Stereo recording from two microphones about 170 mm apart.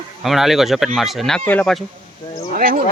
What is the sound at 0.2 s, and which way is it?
Speech, centre (ahead or behind).